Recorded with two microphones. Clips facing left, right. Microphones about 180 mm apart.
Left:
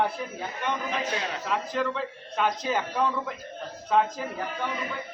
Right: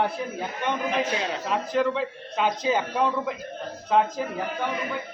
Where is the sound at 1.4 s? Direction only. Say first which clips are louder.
Right 5 dB; 20° right (ahead or behind).